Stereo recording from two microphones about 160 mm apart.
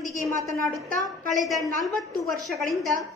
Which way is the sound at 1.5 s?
20° right (ahead or behind).